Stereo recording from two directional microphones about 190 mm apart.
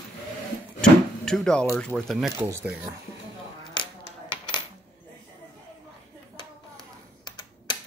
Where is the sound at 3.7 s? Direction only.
25° left (ahead or behind).